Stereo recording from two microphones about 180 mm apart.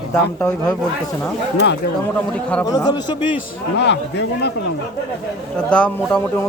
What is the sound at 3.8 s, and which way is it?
Speech, 75° left (ahead or behind).